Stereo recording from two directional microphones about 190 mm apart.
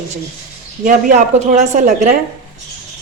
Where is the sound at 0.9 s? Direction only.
40° right (ahead or behind).